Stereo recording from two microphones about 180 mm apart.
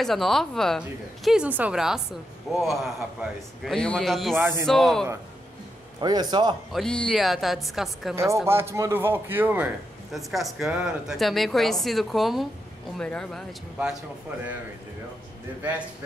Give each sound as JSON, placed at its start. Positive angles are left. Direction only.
{"t": 0.0, "sound": "a woman's voice", "side_deg": 0}
{"t": 4.4, "sound": "speech", "side_deg": -10}
{"t": 4.6, "sound": "a woman's voice", "side_deg": 0}
{"t": 5.9, "sound": "a man's voice", "side_deg": -20}
{"t": 6.7, "sound": "a woman's voice", "side_deg": 5}
{"t": 8.5, "sound": "a woman's voice", "side_deg": -15}